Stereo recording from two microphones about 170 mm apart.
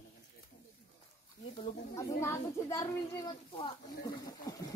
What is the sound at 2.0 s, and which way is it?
Speech, 15° left (ahead or behind).